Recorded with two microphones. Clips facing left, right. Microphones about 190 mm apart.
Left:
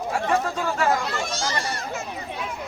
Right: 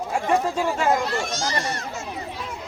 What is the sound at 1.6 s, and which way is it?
Speech, 30° left (ahead or behind).